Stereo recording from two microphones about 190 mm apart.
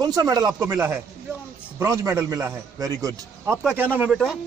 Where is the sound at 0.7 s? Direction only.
5° right (ahead or behind).